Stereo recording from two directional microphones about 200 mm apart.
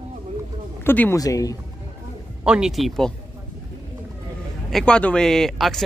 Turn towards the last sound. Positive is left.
turn(degrees=0)  # may be behind; listen again after turning